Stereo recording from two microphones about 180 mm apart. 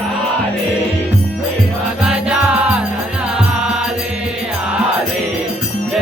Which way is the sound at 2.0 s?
5° right (ahead or behind).